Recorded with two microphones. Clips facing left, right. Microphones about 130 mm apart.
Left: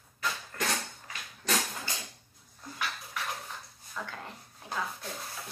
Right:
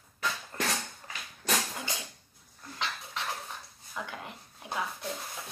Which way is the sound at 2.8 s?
25° right (ahead or behind).